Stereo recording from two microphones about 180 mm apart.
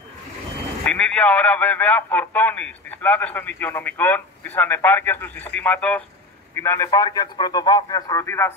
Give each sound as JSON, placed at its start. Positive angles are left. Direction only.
{"t": 0.8, "sound": "a man's voice", "side_deg": 5}